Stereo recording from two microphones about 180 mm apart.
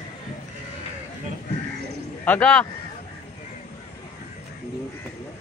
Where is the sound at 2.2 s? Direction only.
5° left (ahead or behind).